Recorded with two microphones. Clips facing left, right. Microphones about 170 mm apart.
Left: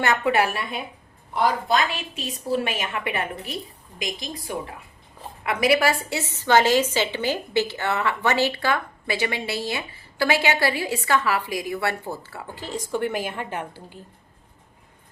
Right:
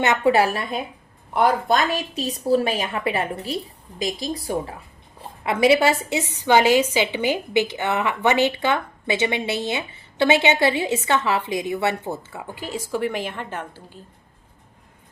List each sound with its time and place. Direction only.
0.0 s a woman's voice: 20° right (ahead or behind)
0.3 s a woman's voice: 35° right (ahead or behind)
1.3 s a woman's voice: 55° right (ahead or behind); by 14.0 s 10° left (ahead or behind)